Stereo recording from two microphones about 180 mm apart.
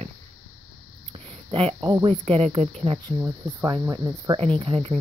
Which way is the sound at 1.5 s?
30° right (ahead or behind).